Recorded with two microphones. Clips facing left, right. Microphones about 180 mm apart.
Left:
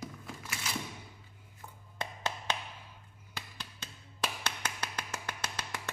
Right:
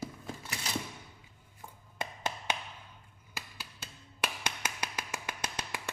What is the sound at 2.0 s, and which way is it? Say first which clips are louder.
Music: even; 10° right (ahead or behind).